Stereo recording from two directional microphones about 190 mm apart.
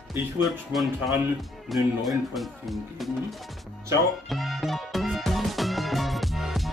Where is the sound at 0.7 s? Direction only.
Centre (ahead or behind).